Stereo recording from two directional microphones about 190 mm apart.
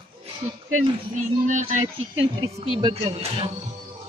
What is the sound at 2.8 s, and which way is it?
Speech, 30° right (ahead or behind).